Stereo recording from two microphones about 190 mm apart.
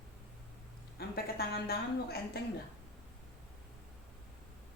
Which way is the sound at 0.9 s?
55° left (ahead or behind).